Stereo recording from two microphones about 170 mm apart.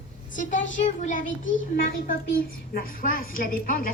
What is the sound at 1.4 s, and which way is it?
Speech, 90° left.